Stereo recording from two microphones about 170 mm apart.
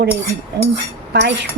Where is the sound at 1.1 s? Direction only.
80° right.